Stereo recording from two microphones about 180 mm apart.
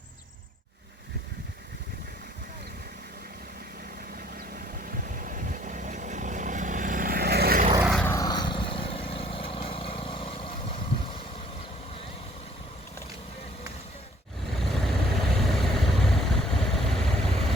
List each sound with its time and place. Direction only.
4.4 s vehicle: 50° right (ahead or behind)
7.9 s vehicle: 5° left (ahead or behind)
8.1 s vehicle: 20° left (ahead or behind)
14.6 s vehicle: centre (ahead or behind)